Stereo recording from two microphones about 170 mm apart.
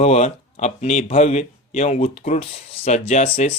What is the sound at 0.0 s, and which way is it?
Speech, 40° left (ahead or behind).